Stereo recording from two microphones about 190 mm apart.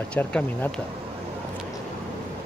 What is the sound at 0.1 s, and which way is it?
Speech, 5° left (ahead or behind).